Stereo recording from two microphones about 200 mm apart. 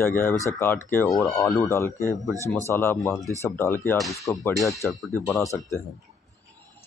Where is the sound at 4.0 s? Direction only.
Centre (ahead or behind).